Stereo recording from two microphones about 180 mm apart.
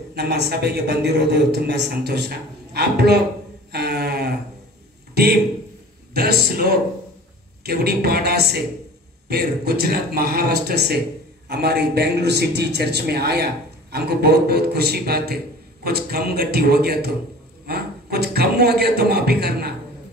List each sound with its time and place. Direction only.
0.1 s a man's voice: 65° right (ahead or behind)
3.7 s a sound: 65° right (ahead or behind)
5.1 s a man's voice: 60° right (ahead or behind)